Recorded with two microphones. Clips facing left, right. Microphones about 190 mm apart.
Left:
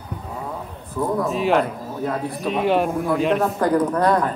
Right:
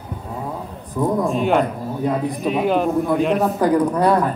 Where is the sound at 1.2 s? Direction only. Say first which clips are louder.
Even; centre (ahead or behind).